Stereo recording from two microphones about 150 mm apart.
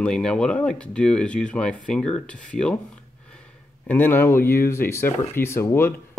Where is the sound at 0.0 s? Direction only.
5° left (ahead or behind).